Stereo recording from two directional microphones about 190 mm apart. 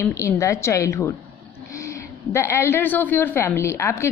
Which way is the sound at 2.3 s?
15° left (ahead or behind).